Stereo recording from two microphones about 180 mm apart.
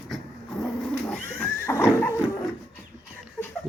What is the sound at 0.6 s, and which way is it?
Bird, 5° left (ahead or behind).